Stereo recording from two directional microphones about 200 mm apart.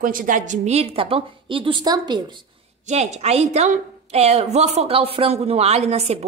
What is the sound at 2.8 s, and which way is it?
A woman's voice, 35° right (ahead or behind).